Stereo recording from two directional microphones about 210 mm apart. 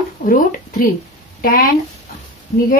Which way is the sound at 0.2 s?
40° left (ahead or behind).